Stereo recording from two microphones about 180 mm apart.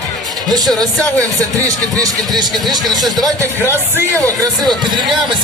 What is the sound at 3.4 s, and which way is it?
Speech, 15° right (ahead or behind).